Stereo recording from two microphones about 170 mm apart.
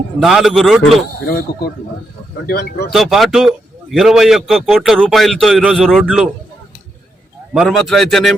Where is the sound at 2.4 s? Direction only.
70° left (ahead or behind).